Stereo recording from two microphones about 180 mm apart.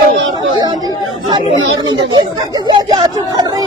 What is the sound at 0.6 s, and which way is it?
Chatter, 20° right (ahead or behind).